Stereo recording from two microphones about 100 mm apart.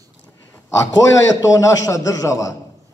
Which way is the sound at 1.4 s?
30° left (ahead or behind).